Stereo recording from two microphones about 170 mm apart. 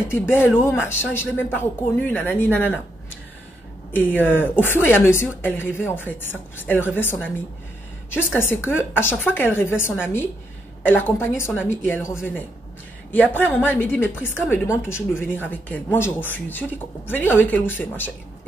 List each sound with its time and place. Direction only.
0.1 s a woman's voice: 15° left (ahead or behind)
3.9 s a woman's voice: 10° left (ahead or behind)
11.1 s a woman's voice: 15° left (ahead or behind)